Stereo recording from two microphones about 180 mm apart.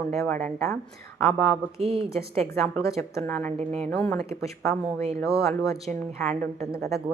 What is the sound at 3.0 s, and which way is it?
Speech, 15° left (ahead or behind).